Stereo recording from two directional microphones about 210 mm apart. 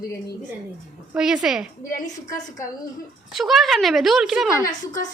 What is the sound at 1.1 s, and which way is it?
Speech, 5° right (ahead or behind).